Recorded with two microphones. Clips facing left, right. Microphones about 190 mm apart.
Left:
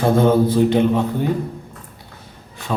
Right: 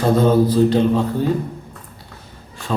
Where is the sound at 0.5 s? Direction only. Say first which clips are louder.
Even; 15° left (ahead or behind).